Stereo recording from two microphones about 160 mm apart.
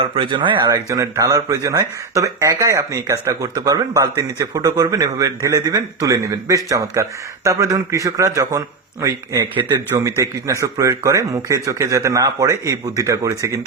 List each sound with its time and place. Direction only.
0.0 s speech: 35° right (ahead or behind)